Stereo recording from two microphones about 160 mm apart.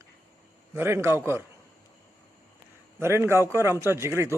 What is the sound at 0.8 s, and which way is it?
Speech, 15° right (ahead or behind).